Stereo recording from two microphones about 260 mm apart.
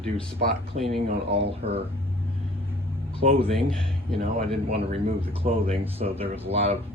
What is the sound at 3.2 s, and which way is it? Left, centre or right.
Speech, right.